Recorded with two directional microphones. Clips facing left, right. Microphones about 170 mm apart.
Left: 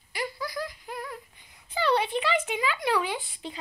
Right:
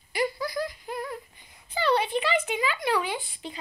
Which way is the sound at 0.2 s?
Centre (ahead or behind).